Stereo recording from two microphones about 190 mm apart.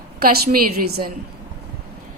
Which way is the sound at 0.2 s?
50° right (ahead or behind).